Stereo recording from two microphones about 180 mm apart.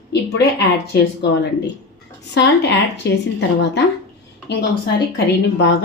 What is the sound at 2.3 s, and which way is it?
Speech, 70° left (ahead or behind).